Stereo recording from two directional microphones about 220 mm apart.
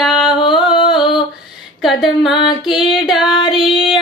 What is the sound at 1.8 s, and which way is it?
Female singing, centre (ahead or behind).